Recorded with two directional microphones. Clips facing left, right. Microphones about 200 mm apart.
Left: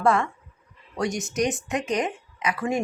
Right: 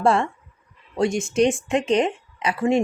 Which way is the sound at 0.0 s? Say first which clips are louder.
Right 2 dB; 30° right (ahead or behind).